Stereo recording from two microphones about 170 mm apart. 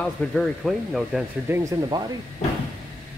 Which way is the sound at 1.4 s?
15° right (ahead or behind).